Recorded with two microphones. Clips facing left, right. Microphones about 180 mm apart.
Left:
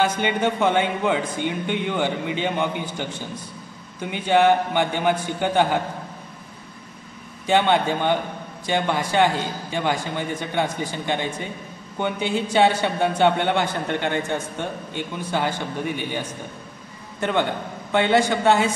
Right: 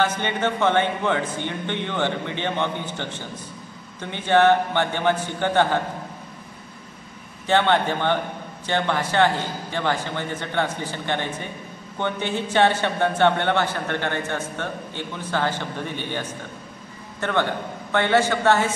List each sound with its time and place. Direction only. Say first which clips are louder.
0.0 s a man's voice: left 2 dB; 15° left (ahead or behind)
7.4 s a man's voice: left 1 dB; 15° left (ahead or behind)